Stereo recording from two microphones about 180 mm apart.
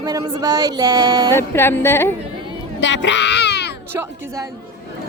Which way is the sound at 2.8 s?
85° left.